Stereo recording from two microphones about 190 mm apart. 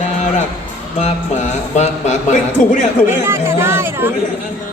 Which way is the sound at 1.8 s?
40° left (ahead or behind).